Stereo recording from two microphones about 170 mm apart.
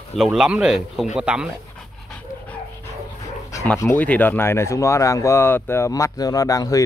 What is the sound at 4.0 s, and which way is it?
Speech, 10° left (ahead or behind).